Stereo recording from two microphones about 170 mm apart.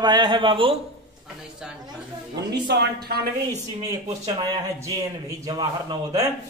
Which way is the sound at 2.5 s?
85° right.